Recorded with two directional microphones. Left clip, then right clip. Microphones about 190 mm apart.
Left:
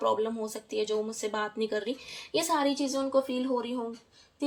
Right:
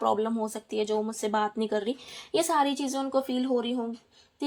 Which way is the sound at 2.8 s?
50° right (ahead or behind).